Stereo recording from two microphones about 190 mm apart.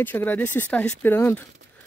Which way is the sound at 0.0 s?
10° left (ahead or behind).